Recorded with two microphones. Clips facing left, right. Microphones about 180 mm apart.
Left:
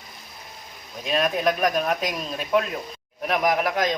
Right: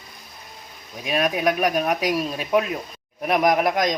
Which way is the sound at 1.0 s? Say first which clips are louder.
Right 1 dB; 10° right (ahead or behind).